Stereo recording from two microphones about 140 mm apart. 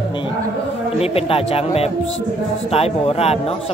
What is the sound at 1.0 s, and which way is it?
Speech, 45° left (ahead or behind).